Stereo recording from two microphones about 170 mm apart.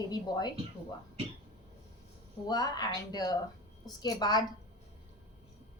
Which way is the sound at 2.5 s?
25° left (ahead or behind).